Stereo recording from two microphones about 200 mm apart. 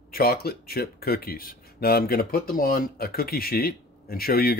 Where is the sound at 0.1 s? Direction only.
50° left (ahead or behind).